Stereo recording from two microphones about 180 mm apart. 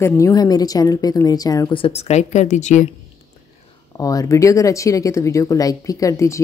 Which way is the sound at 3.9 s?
20° left (ahead or behind).